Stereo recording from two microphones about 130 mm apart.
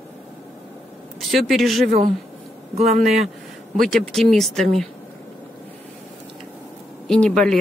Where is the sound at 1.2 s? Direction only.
Centre (ahead or behind).